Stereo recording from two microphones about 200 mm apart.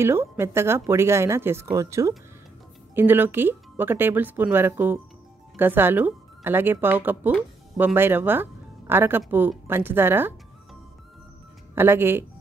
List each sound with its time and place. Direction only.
0.0 s speech: 10° right (ahead or behind)
11.7 s speech: 10° right (ahead or behind)